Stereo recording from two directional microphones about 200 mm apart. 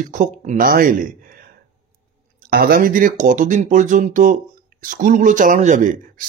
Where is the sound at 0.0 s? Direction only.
40° right (ahead or behind).